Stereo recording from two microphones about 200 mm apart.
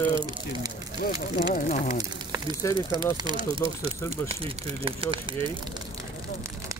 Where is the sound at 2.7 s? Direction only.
20° right (ahead or behind).